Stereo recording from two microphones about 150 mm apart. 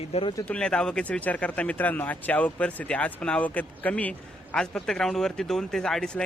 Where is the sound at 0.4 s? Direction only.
5° left (ahead or behind).